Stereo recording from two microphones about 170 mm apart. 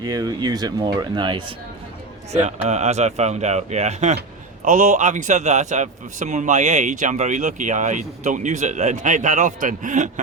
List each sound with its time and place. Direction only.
0.0 s speech: 20° right (ahead or behind)
2.3 s a man's voice: 40° right (ahead or behind)